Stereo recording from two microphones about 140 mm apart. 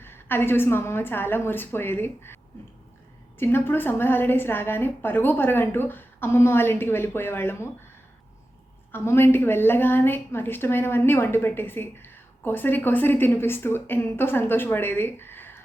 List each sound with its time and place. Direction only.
0.0 s a woman's voice: 15° left (ahead or behind)
8.9 s a woman's voice: 15° left (ahead or behind)